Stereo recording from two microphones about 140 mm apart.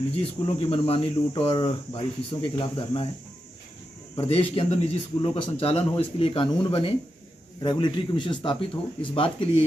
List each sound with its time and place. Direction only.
0.1 s speech: 40° left (ahead or behind)
4.2 s a man's voice: 45° left (ahead or behind)